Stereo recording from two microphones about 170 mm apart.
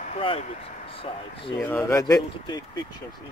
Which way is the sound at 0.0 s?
35° left (ahead or behind).